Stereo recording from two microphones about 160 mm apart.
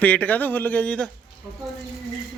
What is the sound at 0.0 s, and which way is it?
Speech, 10° left (ahead or behind).